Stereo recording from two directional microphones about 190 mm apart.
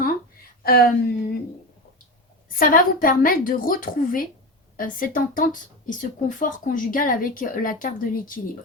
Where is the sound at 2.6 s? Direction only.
50° left (ahead or behind).